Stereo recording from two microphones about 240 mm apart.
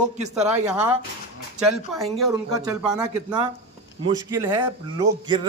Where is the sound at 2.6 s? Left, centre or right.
Centre.